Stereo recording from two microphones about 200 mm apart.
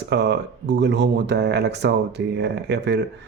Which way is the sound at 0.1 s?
55° right (ahead or behind).